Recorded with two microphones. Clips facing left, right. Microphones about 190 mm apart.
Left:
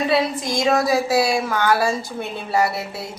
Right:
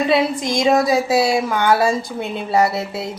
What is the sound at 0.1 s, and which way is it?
Mantra, 20° right (ahead or behind).